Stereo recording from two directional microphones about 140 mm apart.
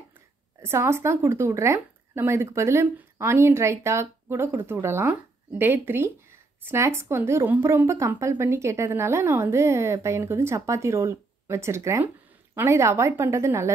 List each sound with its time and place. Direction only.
0.6 s speech: 20° right (ahead or behind)